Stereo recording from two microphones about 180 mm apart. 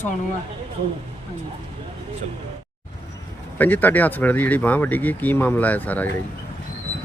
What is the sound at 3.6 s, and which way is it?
Speech, 10° left (ahead or behind).